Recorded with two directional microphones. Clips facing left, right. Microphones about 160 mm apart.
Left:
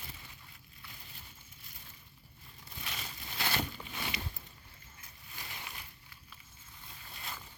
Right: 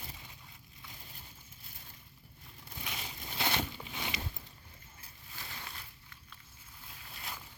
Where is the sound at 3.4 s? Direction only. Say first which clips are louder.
Right 1 dB; 20° right (ahead or behind).